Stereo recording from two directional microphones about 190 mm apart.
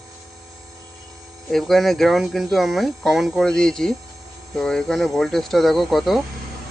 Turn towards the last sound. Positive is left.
turn(degrees=0)  # may be behind; listen again after turning